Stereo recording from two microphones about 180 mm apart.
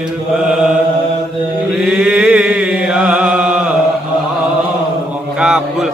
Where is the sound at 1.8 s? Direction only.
5° right (ahead or behind).